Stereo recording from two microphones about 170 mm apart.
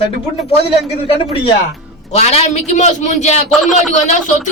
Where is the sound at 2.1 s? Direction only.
40° left (ahead or behind).